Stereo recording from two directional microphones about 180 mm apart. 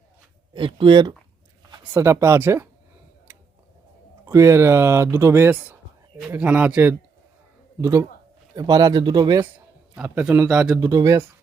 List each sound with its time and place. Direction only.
0.5 s speech: 30° right (ahead or behind)
1.8 s speech: 10° right (ahead or behind)
4.3 s speech: 15° right (ahead or behind)
10.0 s speech: 5° right (ahead or behind)
10.8 s speech: 15° right (ahead or behind)